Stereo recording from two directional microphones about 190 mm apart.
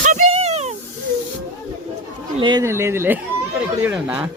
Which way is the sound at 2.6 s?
15° right (ahead or behind).